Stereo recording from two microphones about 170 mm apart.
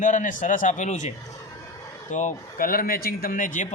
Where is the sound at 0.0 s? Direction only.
50° left (ahead or behind).